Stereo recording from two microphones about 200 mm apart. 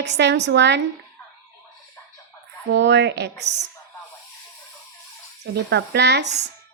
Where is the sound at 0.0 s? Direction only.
60° right (ahead or behind).